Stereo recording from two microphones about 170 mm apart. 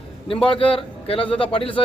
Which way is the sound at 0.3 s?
30° left (ahead or behind).